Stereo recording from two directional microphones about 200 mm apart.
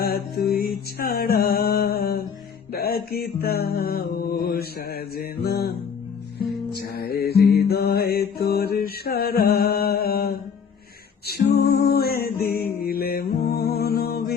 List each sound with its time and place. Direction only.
0.0 s music: 50° left (ahead or behind)
6.7 s music: 50° left (ahead or behind)